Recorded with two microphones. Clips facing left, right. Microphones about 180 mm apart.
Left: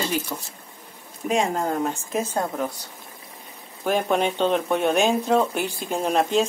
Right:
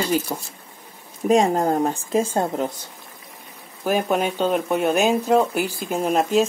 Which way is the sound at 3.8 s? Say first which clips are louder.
Right 1 dB; 5° right (ahead or behind).